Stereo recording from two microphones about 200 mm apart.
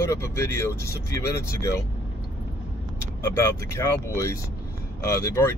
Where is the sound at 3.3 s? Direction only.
15° left (ahead or behind).